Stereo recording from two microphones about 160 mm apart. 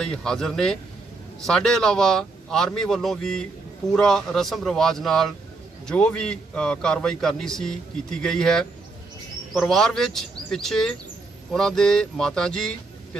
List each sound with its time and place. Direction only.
0.0 s a man's voice: 5° left (ahead or behind)